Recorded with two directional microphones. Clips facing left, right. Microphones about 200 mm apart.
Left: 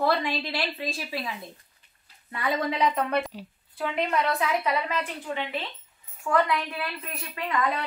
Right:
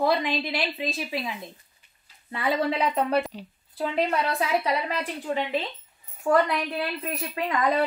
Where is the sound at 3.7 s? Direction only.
35° right (ahead or behind).